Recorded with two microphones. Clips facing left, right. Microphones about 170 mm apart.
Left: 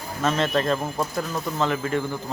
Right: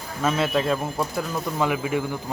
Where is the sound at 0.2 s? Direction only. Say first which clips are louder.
Even; 10° right (ahead or behind).